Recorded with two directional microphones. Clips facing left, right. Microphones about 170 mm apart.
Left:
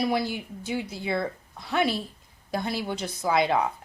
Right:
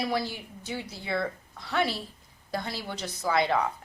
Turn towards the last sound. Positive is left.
turn(degrees=15)  # may be behind; listen again after turning